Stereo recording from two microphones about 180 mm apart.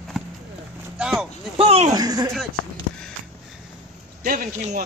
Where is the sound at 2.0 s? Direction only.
20° right (ahead or behind).